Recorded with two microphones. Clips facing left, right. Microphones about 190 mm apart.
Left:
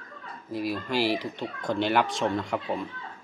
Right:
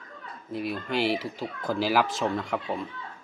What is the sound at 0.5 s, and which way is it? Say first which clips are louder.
Speech: left 1 dB; centre (ahead or behind).